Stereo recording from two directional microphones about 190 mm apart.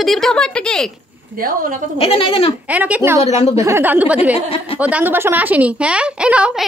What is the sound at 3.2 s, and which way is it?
Speech, 30° left (ahead or behind).